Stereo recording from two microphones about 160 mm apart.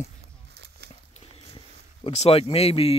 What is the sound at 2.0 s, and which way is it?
Speech, 40° left (ahead or behind).